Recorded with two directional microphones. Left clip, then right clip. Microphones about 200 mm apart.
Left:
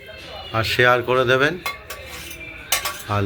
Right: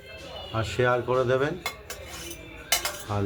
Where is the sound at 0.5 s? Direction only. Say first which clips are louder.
Left 8 dB; 10° left (ahead or behind).